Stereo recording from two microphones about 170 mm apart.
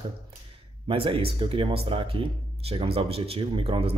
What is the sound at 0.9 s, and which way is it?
Speech, 30° right (ahead or behind).